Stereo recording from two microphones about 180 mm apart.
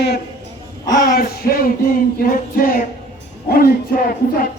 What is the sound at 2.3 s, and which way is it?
Speech, 50° left (ahead or behind).